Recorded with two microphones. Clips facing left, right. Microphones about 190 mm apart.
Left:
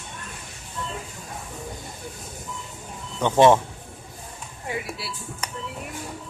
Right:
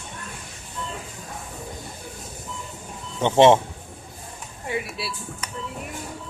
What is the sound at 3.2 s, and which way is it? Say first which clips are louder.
Speech: right 1 dB; 25° right (ahead or behind).